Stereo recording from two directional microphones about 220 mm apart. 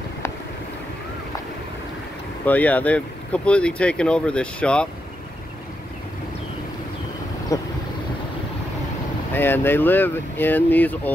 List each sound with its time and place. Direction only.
2.4 s speech: 5° left (ahead or behind)
7.5 s vehicle: 15° left (ahead or behind)
9.3 s speech: 10° left (ahead or behind)